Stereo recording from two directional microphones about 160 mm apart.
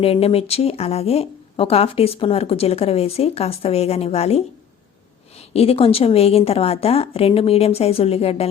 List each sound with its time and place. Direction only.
0.0 s speech: 40° left (ahead or behind)